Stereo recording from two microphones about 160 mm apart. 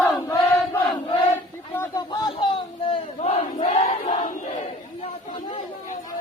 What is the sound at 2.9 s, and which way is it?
Battle cry, 40° left (ahead or behind).